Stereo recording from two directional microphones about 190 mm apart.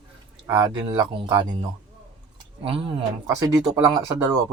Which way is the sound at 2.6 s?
30° right (ahead or behind).